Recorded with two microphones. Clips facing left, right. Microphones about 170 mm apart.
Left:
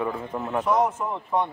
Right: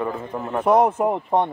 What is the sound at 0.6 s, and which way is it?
Speech, 60° right (ahead or behind).